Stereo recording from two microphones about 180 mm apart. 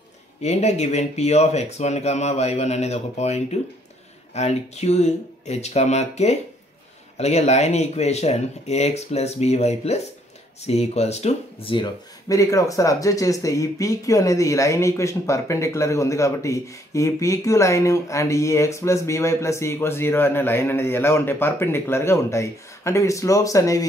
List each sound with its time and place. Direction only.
0.4 s speech: 40° left (ahead or behind); by 23.9 s 20° left (ahead or behind)